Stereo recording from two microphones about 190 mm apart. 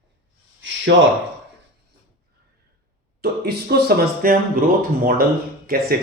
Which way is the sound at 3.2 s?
55° right (ahead or behind).